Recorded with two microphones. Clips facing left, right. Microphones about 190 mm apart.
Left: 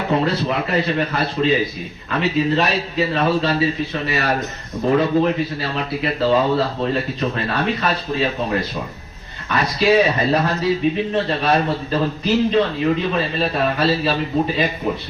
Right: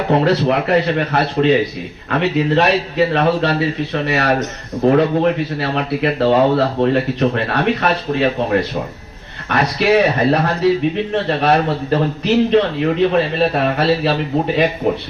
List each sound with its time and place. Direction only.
0.1 s a man's voice: 65° right (ahead or behind)